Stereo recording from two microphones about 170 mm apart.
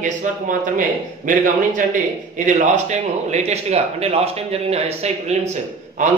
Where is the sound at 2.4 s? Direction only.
45° right (ahead or behind).